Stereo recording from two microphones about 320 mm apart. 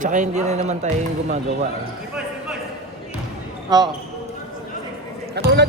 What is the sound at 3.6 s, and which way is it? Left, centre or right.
Speech, centre.